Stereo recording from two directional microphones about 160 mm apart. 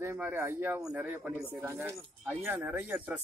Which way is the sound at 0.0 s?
15° right (ahead or behind).